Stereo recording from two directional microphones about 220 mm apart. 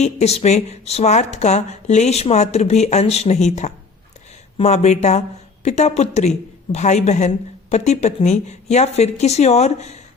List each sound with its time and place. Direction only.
0.0 s a woman's voice: 30° left (ahead or behind)